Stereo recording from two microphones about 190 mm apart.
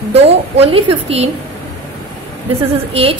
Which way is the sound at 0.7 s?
30° right (ahead or behind).